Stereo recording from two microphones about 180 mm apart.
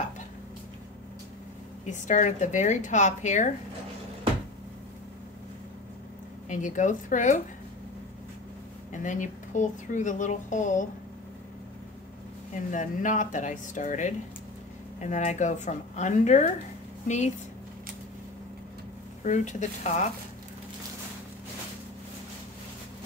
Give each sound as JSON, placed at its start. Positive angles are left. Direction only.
{"t": 1.9, "sound": "speech", "side_deg": 45}
{"t": 6.5, "sound": "speech", "side_deg": 45}
{"t": 8.9, "sound": "speech", "side_deg": 45}
{"t": 12.5, "sound": "speech", "side_deg": 45}
{"t": 19.2, "sound": "speech", "side_deg": 40}